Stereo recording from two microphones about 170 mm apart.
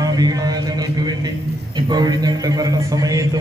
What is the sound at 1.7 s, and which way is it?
A woman's voice, 25° right (ahead or behind).